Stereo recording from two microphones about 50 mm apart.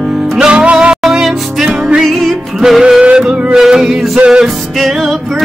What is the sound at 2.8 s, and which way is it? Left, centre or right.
Male singing, right.